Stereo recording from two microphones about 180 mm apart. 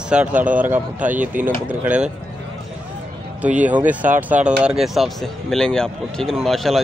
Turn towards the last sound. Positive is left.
turn(degrees=0)  # may be behind; listen again after turning